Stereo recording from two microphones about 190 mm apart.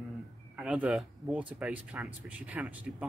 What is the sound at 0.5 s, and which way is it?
Speech, 5° right (ahead or behind).